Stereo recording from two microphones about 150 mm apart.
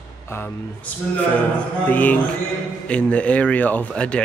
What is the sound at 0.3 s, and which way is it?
Speech, 15° left (ahead or behind).